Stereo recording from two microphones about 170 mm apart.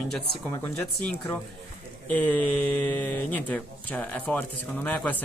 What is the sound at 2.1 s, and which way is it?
Speech, 10° left (ahead or behind).